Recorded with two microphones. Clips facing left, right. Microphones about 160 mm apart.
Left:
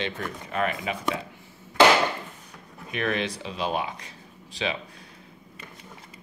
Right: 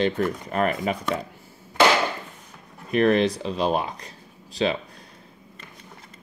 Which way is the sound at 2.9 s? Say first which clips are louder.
Right 9 dB; 35° right (ahead or behind).